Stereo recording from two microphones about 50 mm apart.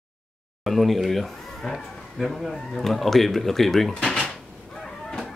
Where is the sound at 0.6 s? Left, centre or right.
Centre.